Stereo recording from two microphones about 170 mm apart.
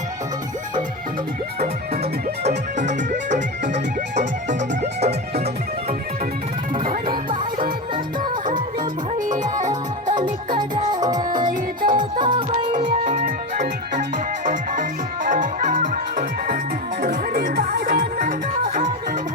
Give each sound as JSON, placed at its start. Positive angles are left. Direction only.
{"t": 2.4, "sound": "music", "side_deg": -45}
{"t": 9.1, "sound": "music", "side_deg": -45}
{"t": 9.6, "sound": "music", "side_deg": -25}
{"t": 12.7, "sound": "music", "side_deg": -45}